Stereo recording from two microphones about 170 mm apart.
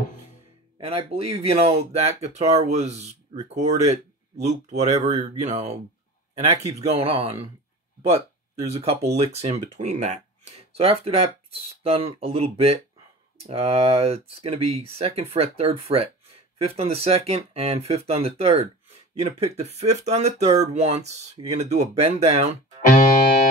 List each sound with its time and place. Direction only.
0.7 s speech: 35° right (ahead or behind)
8.6 s speech: 35° right (ahead or behind)